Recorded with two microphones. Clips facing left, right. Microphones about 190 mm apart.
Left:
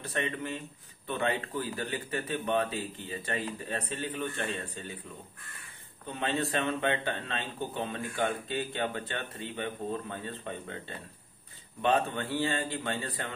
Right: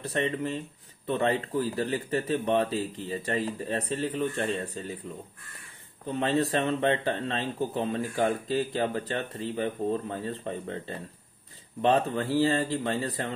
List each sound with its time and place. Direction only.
0.0 s a man's voice: 35° right (ahead or behind)
6.0 s a man's voice: 35° right (ahead or behind)